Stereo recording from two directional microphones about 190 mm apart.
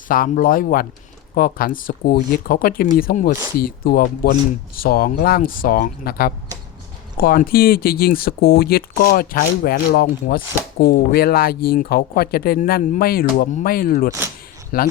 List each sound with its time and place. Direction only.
0.1 s speech: 50° left (ahead or behind)